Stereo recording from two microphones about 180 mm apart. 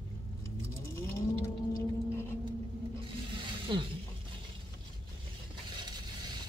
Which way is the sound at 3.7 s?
25° right (ahead or behind).